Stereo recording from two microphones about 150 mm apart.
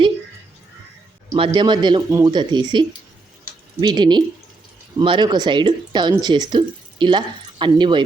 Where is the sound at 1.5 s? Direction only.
30° right (ahead or behind).